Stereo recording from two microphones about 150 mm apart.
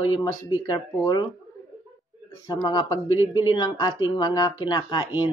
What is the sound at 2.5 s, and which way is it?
A woman's voice, 30° left (ahead or behind).